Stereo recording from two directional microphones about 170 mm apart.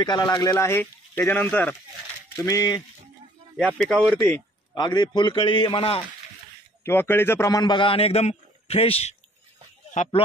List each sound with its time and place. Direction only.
0.0 s speech: 25° left (ahead or behind); by 1.8 s 10° left (ahead or behind)
2.3 s a man's voice: 20° left (ahead or behind)
3.5 s speech: 5° left (ahead or behind)
4.3 s a man's voice: 25° left (ahead or behind)
6.8 s a man's voice: 15° left (ahead or behind); by 9.1 s 35° left (ahead or behind)
9.9 s speech: 45° left (ahead or behind)